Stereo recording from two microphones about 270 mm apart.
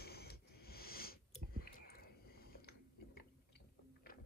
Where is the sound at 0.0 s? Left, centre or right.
Left.